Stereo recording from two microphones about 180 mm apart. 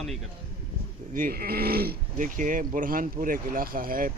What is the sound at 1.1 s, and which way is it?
Speech, 50° right (ahead or behind).